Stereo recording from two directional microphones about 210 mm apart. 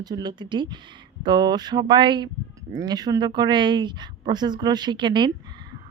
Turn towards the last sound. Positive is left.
turn(degrees=-20)  # may be behind; listen again after turning